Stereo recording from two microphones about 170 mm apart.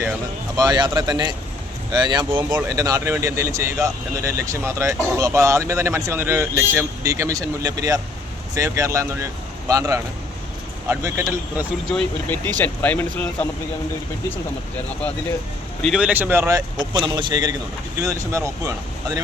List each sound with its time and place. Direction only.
0.5 s speech: 25° right (ahead or behind)
11.9 s speech: 10° left (ahead or behind)
15.8 s speech: 5° right (ahead or behind); by 19.2 s 20° right (ahead or behind)